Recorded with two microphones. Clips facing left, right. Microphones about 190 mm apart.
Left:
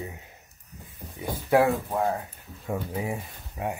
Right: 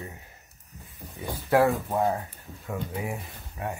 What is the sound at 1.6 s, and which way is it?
Speech, centre (ahead or behind).